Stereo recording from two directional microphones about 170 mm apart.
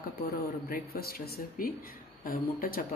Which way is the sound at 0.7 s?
60° left (ahead or behind).